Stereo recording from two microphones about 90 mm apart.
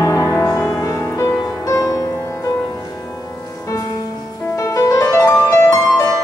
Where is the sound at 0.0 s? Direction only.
35° left (ahead or behind).